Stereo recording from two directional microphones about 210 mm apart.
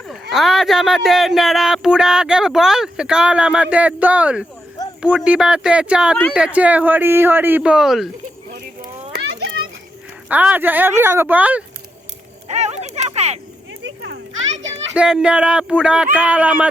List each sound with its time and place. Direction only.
0.1 s speech: centre (ahead or behind)
10.2 s speech: 5° right (ahead or behind)
12.5 s speech: 30° right (ahead or behind)
13.8 s children playing: 60° right (ahead or behind)
14.9 s speech: 5° right (ahead or behind)